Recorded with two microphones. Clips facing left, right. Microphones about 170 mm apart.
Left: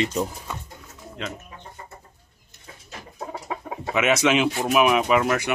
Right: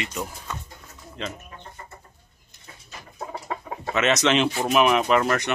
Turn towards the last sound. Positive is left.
turn(degrees=5)  # may be behind; listen again after turning